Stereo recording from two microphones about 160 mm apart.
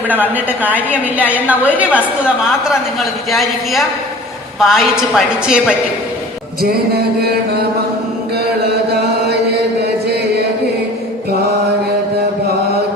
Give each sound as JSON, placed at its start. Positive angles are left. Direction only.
{"t": 0.1, "sound": "a woman's voice", "side_deg": -10}
{"t": 6.6, "sound": "chant", "side_deg": -75}
{"t": 8.9, "sound": "chant", "side_deg": -90}